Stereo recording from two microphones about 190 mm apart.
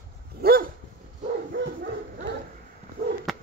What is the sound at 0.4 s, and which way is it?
Dog, 50° right (ahead or behind).